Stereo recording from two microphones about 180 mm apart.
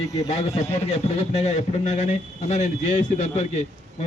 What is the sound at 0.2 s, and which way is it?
Speech, 40° left (ahead or behind).